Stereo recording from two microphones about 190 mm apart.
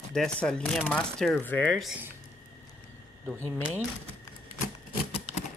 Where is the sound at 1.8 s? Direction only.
5° right (ahead or behind).